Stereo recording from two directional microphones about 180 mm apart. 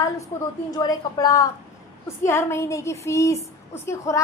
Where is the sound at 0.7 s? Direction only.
20° left (ahead or behind).